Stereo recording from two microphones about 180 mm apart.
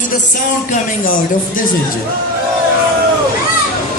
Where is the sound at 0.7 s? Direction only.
50° left (ahead or behind).